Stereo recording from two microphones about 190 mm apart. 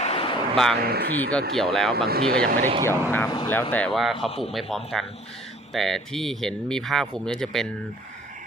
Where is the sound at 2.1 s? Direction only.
55° right (ahead or behind).